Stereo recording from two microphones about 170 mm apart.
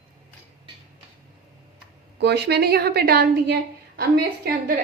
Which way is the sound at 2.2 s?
75° right (ahead or behind).